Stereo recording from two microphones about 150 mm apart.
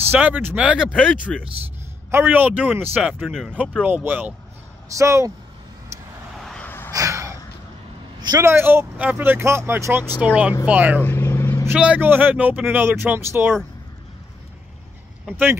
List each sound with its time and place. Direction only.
0.0 s speech: 10° right (ahead or behind)
6.4 s wheeze: 10° left (ahead or behind)
6.9 s a sound: 20° right (ahead or behind)
8.2 s speech: 25° right (ahead or behind)
11.0 s vehicle: 15° left (ahead or behind)
11.6 s speech: 10° right (ahead or behind)
15.2 s speech: 15° right (ahead or behind)